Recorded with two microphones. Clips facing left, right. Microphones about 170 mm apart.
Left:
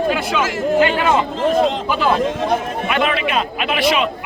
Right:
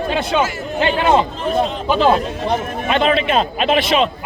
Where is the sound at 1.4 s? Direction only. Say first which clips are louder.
Left 3 dB; 90° left.